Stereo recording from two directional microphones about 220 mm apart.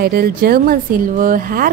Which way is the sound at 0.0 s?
45° right (ahead or behind).